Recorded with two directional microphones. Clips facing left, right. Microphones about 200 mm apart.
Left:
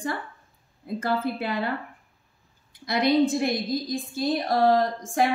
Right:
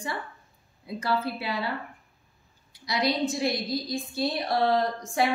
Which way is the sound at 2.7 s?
55° left (ahead or behind).